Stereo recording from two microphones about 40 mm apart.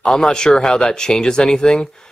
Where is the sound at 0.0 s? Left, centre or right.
Centre.